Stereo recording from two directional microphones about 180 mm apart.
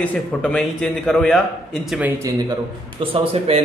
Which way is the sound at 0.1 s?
10° left (ahead or behind).